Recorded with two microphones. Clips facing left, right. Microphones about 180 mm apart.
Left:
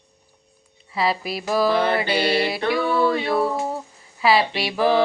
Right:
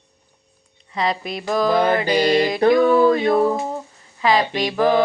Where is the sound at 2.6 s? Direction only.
45° right (ahead or behind).